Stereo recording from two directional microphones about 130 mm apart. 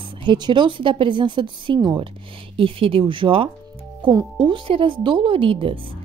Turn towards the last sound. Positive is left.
turn(degrees=-45)  # may be behind; listen again after turning